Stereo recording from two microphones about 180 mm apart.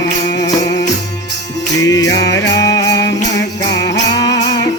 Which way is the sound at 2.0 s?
80° left.